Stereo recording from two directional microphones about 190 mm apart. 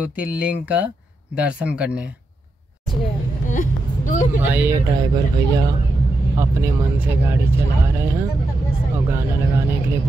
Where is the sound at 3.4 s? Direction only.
45° left (ahead or behind).